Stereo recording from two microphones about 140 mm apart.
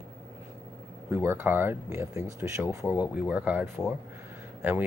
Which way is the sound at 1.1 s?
15° right (ahead or behind).